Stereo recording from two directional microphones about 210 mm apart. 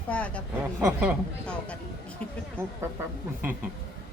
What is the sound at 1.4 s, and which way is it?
Speech, 5° left (ahead or behind).